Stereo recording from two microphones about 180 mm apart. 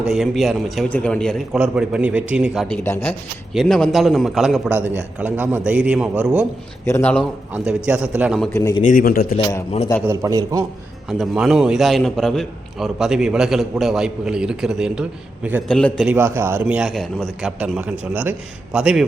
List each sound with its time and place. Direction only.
0.0 s a man's voice: centre (ahead or behind)
1.5 s a man's voice: 5° right (ahead or behind)
2.8 s a man's voice: 10° left (ahead or behind)
3.5 s a man's voice: centre (ahead or behind)
6.8 s a man's voice: 10° left (ahead or behind)
7.5 s a man's voice: 5° right (ahead or behind)
8.5 s a man's voice: 20° left (ahead or behind)
8.8 s speech: 50° left (ahead or behind)
10.1 s a man's voice: 20° right (ahead or behind)
11.1 s a man's voice: 5° right (ahead or behind)
16.0 s a man's voice: 10° right (ahead or behind)